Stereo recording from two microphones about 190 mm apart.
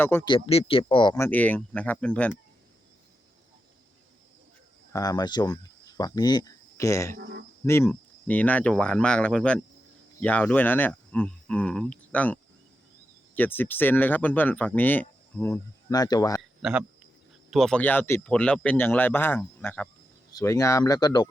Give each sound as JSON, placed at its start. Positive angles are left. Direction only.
{"t": 0.0, "sound": "speech", "side_deg": 10}
{"t": 0.3, "sound": "speech", "side_deg": 30}
{"t": 4.9, "sound": "speech", "side_deg": 20}
{"t": 7.2, "sound": "insect", "side_deg": -60}
{"t": 7.6, "sound": "speech", "side_deg": 10}
{"t": 16.4, "sound": "a sound", "side_deg": -5}
{"t": 17.5, "sound": "speech", "side_deg": 0}